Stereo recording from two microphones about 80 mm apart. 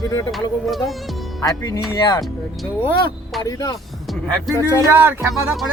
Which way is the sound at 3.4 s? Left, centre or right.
Left.